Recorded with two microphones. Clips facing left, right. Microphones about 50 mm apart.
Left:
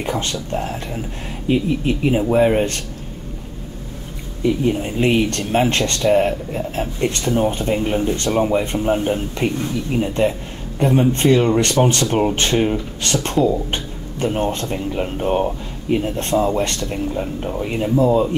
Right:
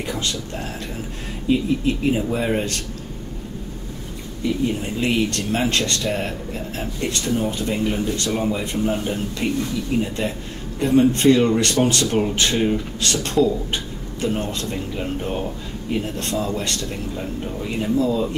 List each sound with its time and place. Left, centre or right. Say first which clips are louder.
0.0 s speech: left 3 dB; left
4.6 s speech: left 5 dB; left
17.9 s speech: left 6 dB; left